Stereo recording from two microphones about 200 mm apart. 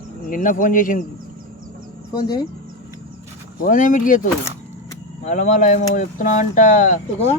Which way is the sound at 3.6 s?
40° left (ahead or behind).